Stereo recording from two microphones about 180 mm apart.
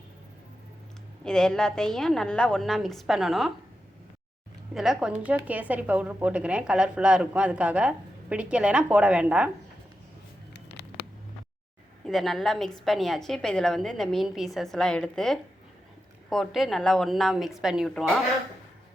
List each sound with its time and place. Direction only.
1.2 s a woman's voice: 5° left (ahead or behind)
4.7 s speech: centre (ahead or behind)
10.5 s a sound: 70° left (ahead or behind)
12.0 s a woman's voice: centre (ahead or behind)